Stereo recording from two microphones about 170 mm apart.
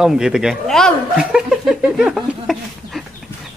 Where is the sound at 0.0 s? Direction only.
5° right (ahead or behind).